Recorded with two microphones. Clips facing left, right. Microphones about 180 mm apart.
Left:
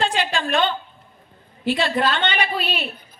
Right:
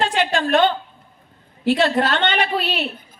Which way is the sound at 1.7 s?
65° right (ahead or behind).